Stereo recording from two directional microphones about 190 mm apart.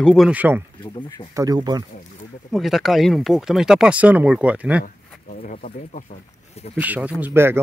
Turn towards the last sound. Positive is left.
turn(degrees=-10)  # may be behind; listen again after turning